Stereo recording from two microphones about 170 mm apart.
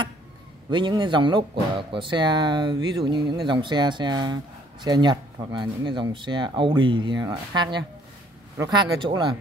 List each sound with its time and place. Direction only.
0.7 s speech: 25° right (ahead or behind)